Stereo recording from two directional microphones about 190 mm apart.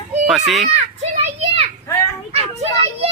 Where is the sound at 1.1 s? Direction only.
35° right (ahead or behind).